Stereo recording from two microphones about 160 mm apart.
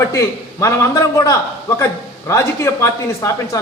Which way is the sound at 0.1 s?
20° left (ahead or behind).